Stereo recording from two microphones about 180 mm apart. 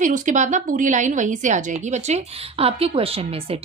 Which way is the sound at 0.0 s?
45° right (ahead or behind).